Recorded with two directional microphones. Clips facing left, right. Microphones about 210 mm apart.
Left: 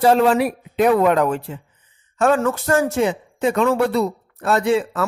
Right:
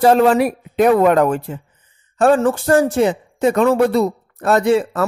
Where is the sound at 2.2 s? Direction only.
30° right (ahead or behind).